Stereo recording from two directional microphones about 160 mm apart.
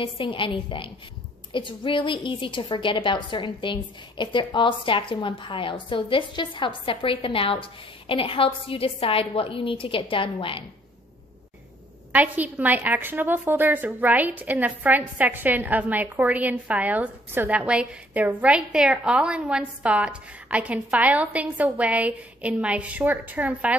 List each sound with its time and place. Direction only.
0.0 s a woman's voice: 30° left (ahead or behind)
12.1 s a woman's voice: 10° right (ahead or behind)